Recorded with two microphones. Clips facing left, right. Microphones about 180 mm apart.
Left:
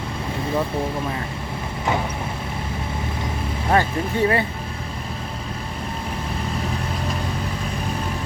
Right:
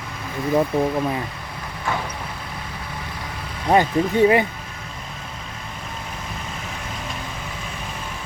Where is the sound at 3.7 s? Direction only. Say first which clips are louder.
Right 4 dB; 20° right (ahead or behind).